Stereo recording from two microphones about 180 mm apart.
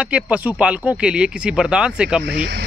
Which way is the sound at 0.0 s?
5° right (ahead or behind).